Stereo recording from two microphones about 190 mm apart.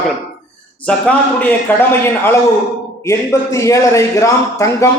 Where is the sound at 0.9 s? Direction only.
10° left (ahead or behind).